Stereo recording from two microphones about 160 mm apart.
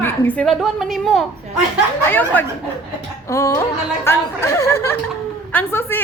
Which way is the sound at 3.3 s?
20° left (ahead or behind).